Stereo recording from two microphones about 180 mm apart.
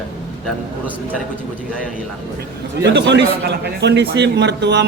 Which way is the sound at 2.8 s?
75° right (ahead or behind).